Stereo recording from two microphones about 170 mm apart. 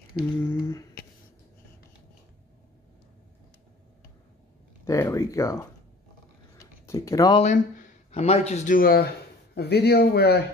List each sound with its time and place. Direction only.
0.4 s speech: 15° left (ahead or behind)
4.8 s speech: 15° left (ahead or behind)
6.9 s speech: 20° left (ahead or behind)
7.3 s speech: 45° left (ahead or behind)
9.6 s speech: 70° left (ahead or behind)